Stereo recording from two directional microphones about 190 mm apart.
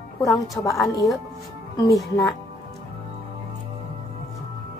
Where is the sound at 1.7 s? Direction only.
20° left (ahead or behind).